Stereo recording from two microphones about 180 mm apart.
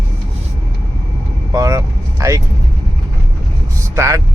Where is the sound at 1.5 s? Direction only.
20° right (ahead or behind).